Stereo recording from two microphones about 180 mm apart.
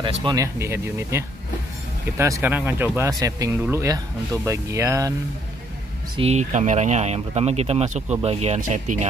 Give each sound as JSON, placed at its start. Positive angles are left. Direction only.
{"t": 0.0, "sound": "speech", "side_deg": -25}
{"t": 6.1, "sound": "speech", "side_deg": -35}